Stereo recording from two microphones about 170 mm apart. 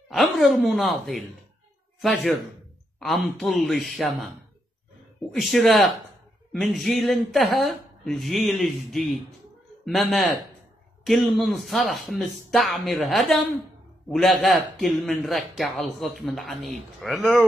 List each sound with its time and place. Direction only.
0.1 s a man's voice: centre (ahead or behind)
5.4 s a man's voice: centre (ahead or behind)